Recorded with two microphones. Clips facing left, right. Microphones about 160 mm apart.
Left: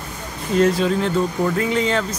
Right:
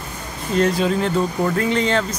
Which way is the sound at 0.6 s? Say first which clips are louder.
Left 1 dB; centre (ahead or behind).